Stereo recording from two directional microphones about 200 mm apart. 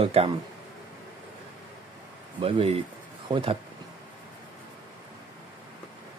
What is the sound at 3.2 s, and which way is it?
Speech, 25° right (ahead or behind).